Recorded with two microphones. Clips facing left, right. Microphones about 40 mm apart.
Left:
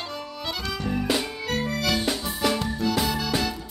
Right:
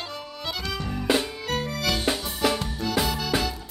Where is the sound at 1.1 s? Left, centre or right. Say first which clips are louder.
Right 6 dB; centre.